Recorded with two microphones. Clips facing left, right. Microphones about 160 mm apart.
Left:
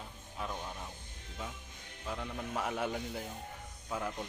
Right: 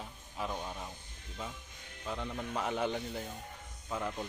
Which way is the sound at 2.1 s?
Centre (ahead or behind).